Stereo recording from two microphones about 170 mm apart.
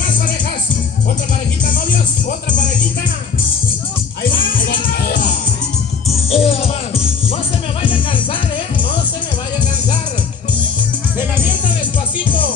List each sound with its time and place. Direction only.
1.7 s music: 50° left (ahead or behind)
4.2 s music: 55° left (ahead or behind)
6.0 s music: 35° left (ahead or behind)
7.8 s music: 30° left (ahead or behind)